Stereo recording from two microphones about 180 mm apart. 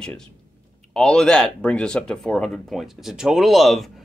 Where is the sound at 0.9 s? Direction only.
5° left (ahead or behind).